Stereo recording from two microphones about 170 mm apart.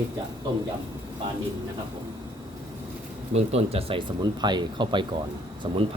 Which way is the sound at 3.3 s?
35° right (ahead or behind).